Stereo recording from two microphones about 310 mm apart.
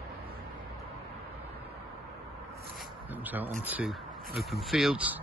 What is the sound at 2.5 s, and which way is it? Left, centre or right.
Zipper, centre.